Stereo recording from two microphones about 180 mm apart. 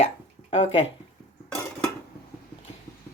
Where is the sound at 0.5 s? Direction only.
30° left (ahead or behind).